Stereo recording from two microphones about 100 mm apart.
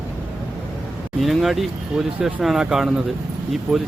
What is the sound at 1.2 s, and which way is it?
Speech, centre (ahead or behind).